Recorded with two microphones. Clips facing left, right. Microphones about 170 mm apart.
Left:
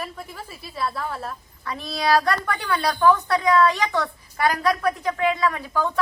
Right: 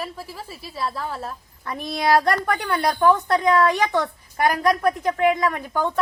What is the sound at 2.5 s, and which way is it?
A woman's voice, 45° right (ahead or behind).